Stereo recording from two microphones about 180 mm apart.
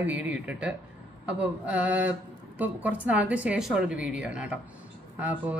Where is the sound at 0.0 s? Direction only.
10° right (ahead or behind).